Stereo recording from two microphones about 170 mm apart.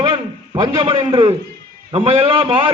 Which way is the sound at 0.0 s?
30° right (ahead or behind).